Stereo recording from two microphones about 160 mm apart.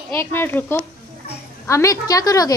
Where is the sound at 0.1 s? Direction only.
15° left (ahead or behind).